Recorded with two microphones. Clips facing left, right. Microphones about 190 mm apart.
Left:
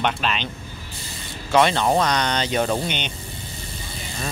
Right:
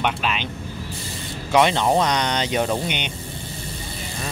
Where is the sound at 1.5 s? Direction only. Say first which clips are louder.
Even; 15° right (ahead or behind).